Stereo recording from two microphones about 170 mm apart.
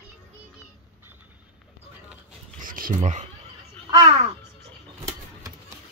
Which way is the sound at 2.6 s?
55° right (ahead or behind).